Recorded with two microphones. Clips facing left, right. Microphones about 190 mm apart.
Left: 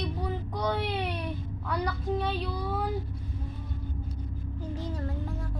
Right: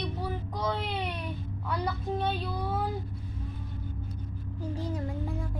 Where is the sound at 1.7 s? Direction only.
5° right (ahead or behind).